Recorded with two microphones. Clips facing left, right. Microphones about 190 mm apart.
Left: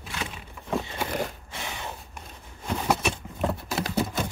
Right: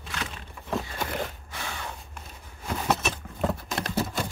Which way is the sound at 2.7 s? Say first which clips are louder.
Left 1 dB; 10° left (ahead or behind).